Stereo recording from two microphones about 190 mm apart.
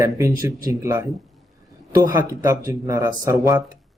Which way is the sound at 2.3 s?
20° right (ahead or behind).